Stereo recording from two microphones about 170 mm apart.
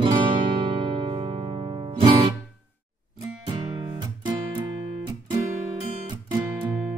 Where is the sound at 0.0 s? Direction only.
30° right (ahead or behind).